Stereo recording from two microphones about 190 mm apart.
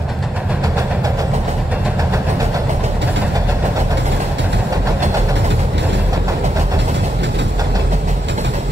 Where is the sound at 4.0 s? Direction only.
70° right (ahead or behind).